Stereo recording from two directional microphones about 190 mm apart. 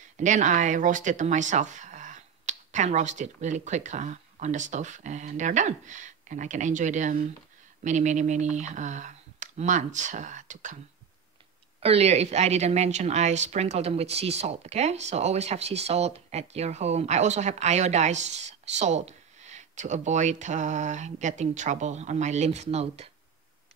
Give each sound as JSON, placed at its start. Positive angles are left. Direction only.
{"t": 0.2, "sound": "a woman's voice", "side_deg": -40}
{"t": 11.8, "sound": "a woman's voice", "side_deg": -35}